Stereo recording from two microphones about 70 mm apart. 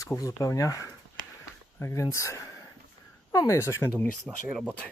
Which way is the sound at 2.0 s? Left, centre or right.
Left.